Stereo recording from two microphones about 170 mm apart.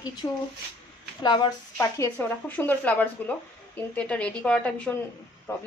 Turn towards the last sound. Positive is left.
turn(degrees=15)  # may be behind; listen again after turning